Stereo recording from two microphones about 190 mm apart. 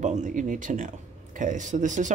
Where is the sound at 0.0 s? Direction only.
40° right (ahead or behind).